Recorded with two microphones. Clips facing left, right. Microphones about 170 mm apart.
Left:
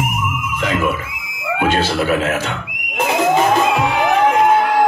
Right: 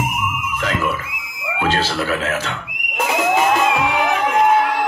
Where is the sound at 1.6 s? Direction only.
15° left (ahead or behind).